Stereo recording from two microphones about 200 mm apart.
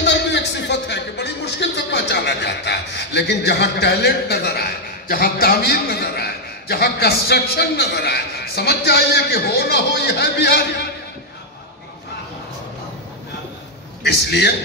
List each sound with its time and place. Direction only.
0.0 s a man's voice: 60° left (ahead or behind)
14.0 s a man's voice: 55° left (ahead or behind)